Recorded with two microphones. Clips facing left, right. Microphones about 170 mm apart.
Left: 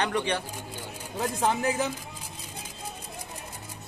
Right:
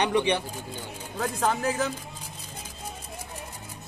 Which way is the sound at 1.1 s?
15° left (ahead or behind).